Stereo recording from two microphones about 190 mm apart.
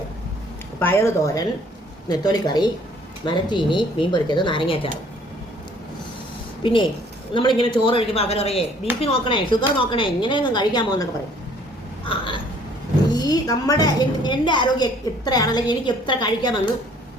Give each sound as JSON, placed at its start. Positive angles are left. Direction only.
{"t": 0.8, "sound": "a woman's voice", "side_deg": 10}
{"t": 7.3, "sound": "a woman's voice", "side_deg": 25}